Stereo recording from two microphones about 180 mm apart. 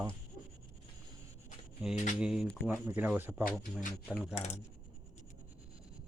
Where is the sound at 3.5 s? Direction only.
Centre (ahead or behind).